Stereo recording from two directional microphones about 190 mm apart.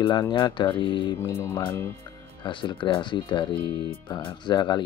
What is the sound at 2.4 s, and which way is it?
Speech, 25° left (ahead or behind).